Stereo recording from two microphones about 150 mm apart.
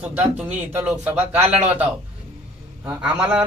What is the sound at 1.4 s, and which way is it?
Speech, 45° right (ahead or behind).